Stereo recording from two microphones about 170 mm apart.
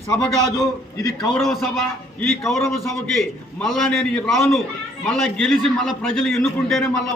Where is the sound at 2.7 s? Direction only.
Centre (ahead or behind).